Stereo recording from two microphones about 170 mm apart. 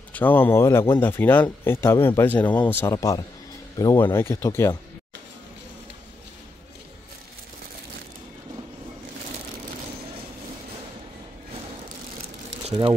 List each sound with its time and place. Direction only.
0.1 s speech: 10° left (ahead or behind)